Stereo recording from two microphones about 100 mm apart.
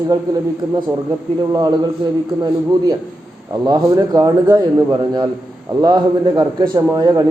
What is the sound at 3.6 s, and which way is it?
A man's voice, 40° right (ahead or behind).